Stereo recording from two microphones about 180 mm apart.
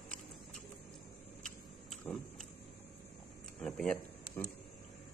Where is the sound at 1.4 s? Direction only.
Centre (ahead or behind).